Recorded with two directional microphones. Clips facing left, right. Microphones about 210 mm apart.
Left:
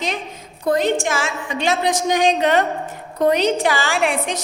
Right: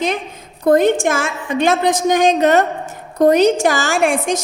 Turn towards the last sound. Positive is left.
turn(degrees=-45)  # may be behind; listen again after turning